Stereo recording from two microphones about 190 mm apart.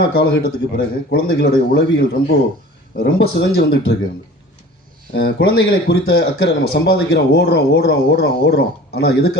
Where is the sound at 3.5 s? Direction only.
60° left (ahead or behind).